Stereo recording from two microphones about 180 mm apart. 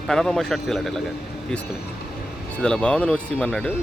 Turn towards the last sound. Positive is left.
turn(degrees=5)  # may be behind; listen again after turning